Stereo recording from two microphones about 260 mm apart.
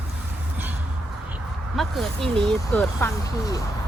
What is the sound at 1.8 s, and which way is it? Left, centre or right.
Speech, centre.